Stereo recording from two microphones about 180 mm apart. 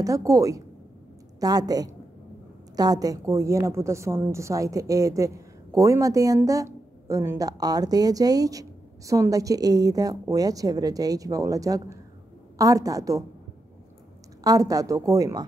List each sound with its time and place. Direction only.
0.0 s a woman's voice: 20° right (ahead or behind)
14.4 s a woman's voice: 20° right (ahead or behind)